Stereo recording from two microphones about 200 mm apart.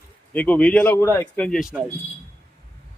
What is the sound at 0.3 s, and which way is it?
A man's voice, 10° left (ahead or behind).